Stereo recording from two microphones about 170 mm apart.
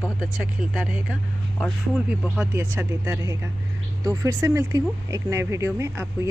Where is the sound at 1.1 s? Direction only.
5° left (ahead or behind).